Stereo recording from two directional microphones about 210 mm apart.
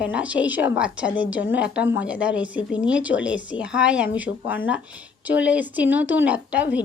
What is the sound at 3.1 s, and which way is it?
Speech, 60° left (ahead or behind).